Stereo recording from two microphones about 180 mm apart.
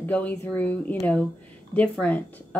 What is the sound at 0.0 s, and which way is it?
Speech, 10° left (ahead or behind).